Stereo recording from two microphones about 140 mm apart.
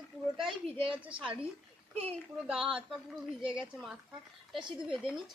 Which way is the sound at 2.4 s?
5° right (ahead or behind).